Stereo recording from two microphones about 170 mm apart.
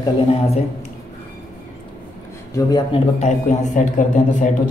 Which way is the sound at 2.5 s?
20° left (ahead or behind).